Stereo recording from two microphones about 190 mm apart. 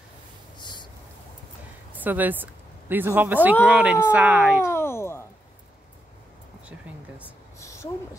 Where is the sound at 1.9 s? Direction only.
10° right (ahead or behind).